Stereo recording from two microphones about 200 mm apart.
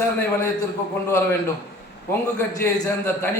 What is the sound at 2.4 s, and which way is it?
Speech, 10° left (ahead or behind).